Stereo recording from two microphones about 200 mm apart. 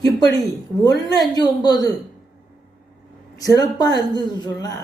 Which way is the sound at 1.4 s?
20° left (ahead or behind).